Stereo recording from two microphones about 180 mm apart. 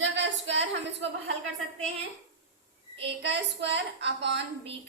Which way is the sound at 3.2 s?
75° right (ahead or behind).